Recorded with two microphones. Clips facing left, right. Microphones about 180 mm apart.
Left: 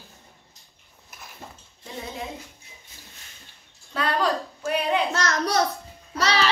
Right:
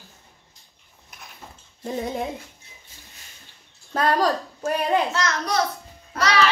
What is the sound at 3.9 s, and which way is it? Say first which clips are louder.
Speech: right 3 dB; 40° right (ahead or behind).